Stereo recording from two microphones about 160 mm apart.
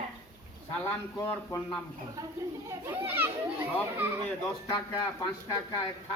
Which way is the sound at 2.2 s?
20° right (ahead or behind).